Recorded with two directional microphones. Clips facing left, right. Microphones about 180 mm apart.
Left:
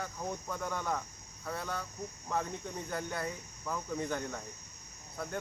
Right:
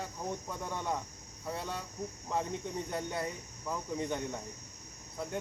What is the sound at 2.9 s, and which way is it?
Speech, 25° right (ahead or behind).